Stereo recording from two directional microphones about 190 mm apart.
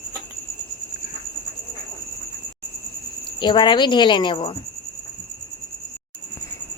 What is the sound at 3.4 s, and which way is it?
Speech, 25° left (ahead or behind).